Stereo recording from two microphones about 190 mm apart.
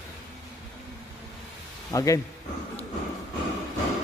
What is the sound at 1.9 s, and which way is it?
Speech, 15° left (ahead or behind).